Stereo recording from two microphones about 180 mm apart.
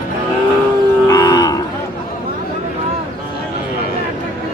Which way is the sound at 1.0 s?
20° left (ahead or behind).